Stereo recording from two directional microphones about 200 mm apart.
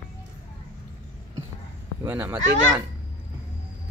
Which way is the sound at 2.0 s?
10° right (ahead or behind).